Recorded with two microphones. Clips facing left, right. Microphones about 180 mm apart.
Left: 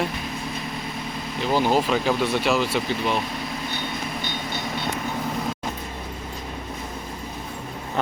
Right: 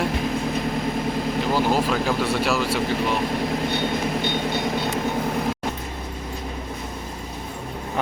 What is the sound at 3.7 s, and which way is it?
Vehicle, 60° right (ahead or behind).